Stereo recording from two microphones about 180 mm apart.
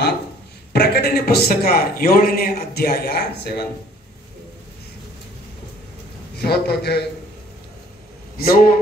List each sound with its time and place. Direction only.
0.7 s a man's voice: 60° left (ahead or behind)
6.3 s a man's voice: 65° left (ahead or behind)
8.4 s a man's voice: 55° left (ahead or behind)